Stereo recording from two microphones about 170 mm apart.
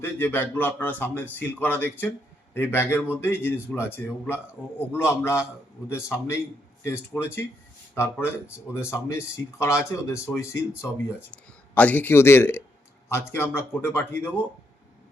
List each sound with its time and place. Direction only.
0.0 s speech: 10° left (ahead or behind)